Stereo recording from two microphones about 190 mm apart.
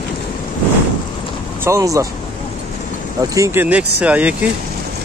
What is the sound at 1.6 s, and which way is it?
Speech, 15° right (ahead or behind).